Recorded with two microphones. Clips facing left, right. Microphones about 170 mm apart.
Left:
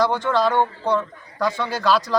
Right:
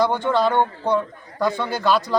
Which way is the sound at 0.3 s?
10° right (ahead or behind).